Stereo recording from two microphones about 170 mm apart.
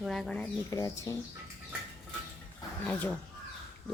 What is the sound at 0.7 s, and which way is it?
Speech, 20° left (ahead or behind).